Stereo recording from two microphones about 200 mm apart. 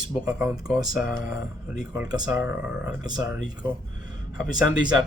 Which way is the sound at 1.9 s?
15° right (ahead or behind).